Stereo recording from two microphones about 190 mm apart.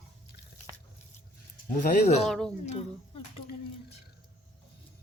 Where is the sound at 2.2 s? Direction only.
5° left (ahead or behind).